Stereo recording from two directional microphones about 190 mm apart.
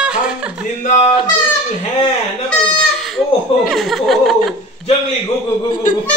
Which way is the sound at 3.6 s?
Centre (ahead or behind).